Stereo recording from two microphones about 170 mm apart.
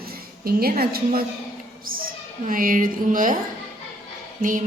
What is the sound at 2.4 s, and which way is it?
Speech, 55° right (ahead or behind).